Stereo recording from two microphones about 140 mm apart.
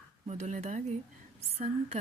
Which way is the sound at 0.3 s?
55° right (ahead or behind).